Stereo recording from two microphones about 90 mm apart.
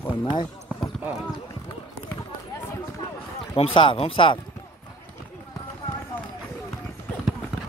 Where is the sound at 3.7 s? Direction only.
80° left.